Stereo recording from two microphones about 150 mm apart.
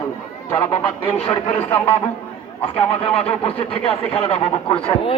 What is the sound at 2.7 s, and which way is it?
A man's voice, 40° left (ahead or behind).